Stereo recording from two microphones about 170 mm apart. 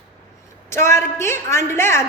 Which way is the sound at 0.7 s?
15° left (ahead or behind).